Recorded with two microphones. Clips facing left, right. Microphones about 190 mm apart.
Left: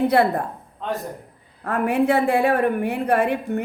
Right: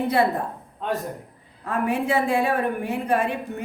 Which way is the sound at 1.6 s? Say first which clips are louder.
Left 4 dB; 65° left (ahead or behind).